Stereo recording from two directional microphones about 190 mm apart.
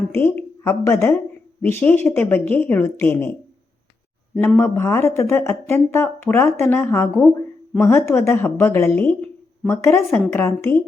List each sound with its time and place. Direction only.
0.1 s a woman's voice: 10° left (ahead or behind)
4.4 s speech: 10° left (ahead or behind)